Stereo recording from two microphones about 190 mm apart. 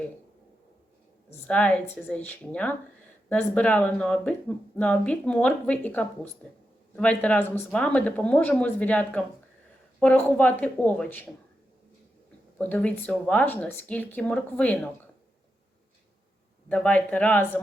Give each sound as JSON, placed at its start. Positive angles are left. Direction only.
{"t": 1.3, "sound": "speech", "side_deg": 5}
{"t": 12.5, "sound": "speech", "side_deg": 10}
{"t": 16.6, "sound": "speech", "side_deg": 5}